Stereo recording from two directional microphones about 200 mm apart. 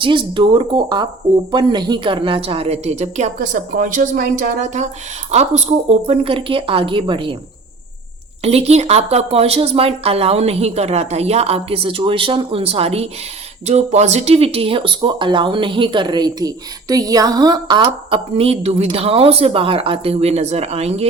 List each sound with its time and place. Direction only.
0.0 s a woman's voice: 25° right (ahead or behind)
8.4 s a woman's voice: 30° right (ahead or behind)